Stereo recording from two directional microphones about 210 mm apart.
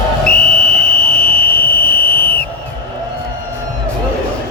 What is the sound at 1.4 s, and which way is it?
Fire alarm, 45° left (ahead or behind).